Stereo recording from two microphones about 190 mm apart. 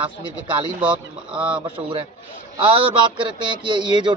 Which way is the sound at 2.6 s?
30° right (ahead or behind).